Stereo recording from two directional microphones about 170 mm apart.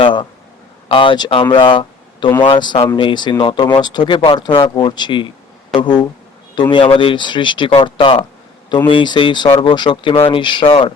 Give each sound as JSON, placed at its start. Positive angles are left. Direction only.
{"t": 0.0, "sound": "speech", "side_deg": 30}